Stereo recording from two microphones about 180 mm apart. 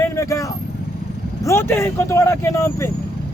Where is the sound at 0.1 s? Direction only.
15° left (ahead or behind).